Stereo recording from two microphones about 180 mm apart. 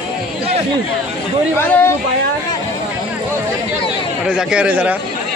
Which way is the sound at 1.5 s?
10° left (ahead or behind).